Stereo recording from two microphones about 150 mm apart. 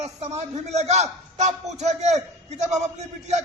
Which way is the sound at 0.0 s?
50° right (ahead or behind).